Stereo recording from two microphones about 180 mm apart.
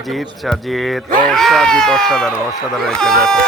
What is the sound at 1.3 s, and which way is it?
Speech, centre (ahead or behind).